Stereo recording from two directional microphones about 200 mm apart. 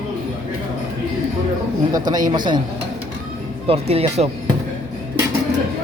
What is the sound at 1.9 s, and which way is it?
Speech, 20° right (ahead or behind).